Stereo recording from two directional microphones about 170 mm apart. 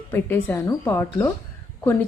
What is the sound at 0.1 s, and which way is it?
Speech, 15° left (ahead or behind).